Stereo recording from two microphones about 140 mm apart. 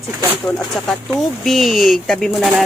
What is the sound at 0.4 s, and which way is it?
Speech, 5° left (ahead or behind).